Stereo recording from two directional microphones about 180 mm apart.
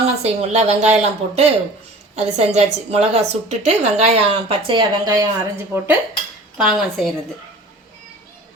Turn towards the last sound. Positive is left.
turn(degrees=0)  # may be behind; listen again after turning